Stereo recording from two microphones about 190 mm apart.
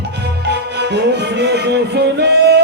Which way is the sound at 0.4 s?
60° right (ahead or behind).